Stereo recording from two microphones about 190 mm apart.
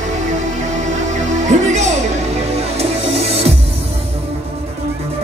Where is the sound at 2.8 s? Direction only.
35° right (ahead or behind).